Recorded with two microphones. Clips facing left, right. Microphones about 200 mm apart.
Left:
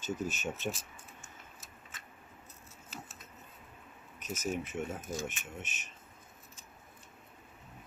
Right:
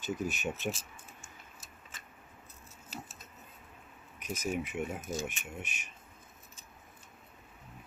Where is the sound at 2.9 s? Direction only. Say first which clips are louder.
Right 3 dB; 35° right (ahead or behind).